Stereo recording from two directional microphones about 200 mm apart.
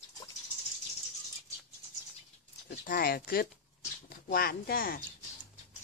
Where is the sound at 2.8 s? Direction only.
45° left (ahead or behind).